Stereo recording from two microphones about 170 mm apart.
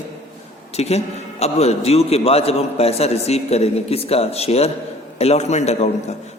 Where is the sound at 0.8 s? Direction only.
40° left (ahead or behind).